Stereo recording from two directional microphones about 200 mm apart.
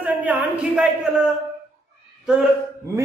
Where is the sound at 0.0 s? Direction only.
10° right (ahead or behind).